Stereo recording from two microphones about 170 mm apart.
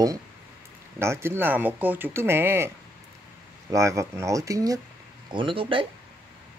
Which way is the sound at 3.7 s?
15° right (ahead or behind).